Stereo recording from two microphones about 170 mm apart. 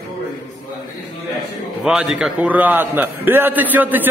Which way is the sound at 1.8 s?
Centre (ahead or behind).